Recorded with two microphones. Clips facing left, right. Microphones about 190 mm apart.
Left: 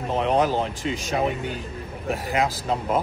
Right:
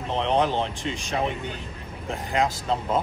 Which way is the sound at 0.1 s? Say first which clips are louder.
Left 2 dB; 5° left (ahead or behind).